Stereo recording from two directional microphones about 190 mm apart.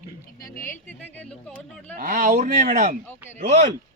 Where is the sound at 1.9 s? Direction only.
45° right (ahead or behind).